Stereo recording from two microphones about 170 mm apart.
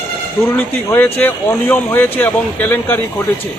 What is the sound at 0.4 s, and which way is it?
Speech, 15° left (ahead or behind).